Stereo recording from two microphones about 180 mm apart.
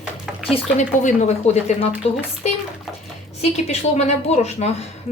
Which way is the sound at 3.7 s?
40° left (ahead or behind).